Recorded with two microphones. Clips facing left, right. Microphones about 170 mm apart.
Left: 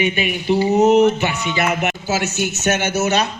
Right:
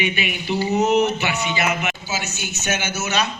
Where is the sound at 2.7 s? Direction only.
60° left (ahead or behind).